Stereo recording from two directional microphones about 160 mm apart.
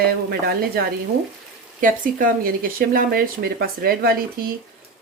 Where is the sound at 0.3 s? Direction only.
75° right (ahead or behind).